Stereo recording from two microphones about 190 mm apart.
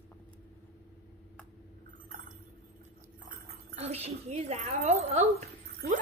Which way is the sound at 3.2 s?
35° right (ahead or behind).